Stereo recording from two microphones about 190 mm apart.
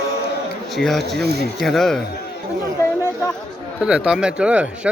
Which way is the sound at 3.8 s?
5° right (ahead or behind).